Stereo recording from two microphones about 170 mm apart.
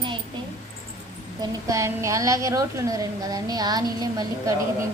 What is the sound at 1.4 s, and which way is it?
A woman's voice, 20° right (ahead or behind).